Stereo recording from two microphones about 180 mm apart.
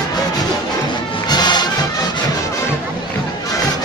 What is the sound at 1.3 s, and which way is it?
Music, 25° left (ahead or behind).